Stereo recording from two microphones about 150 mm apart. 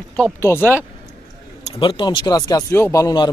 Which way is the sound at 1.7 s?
35° left (ahead or behind).